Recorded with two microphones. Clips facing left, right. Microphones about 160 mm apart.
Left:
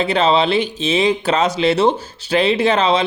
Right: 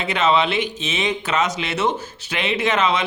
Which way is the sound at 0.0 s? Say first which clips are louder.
Left 4 dB; 30° left (ahead or behind).